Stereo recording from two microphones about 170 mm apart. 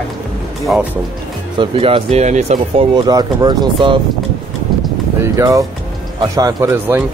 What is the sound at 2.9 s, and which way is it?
Speech, 25° right (ahead or behind).